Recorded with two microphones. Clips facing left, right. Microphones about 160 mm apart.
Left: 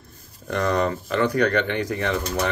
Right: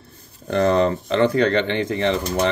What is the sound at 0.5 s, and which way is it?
Speech, 30° right (ahead or behind).